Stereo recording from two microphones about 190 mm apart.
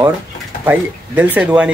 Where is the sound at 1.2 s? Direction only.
5° right (ahead or behind).